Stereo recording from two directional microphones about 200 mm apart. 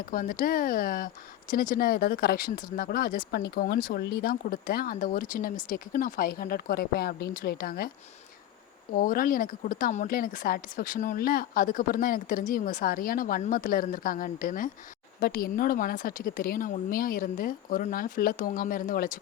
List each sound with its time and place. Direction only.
0.1 s speech: 45° left (ahead or behind)
8.9 s speech: 45° left (ahead or behind)